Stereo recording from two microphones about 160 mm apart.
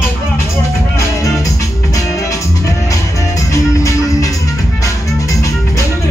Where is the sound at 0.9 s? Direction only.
20° left (ahead or behind).